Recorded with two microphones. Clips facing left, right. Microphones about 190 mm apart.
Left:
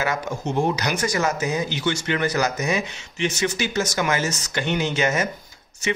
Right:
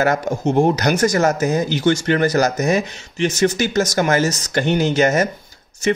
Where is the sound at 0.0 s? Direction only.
45° right (ahead or behind).